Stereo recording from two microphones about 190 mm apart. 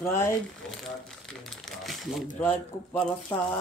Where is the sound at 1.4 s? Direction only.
Centre (ahead or behind).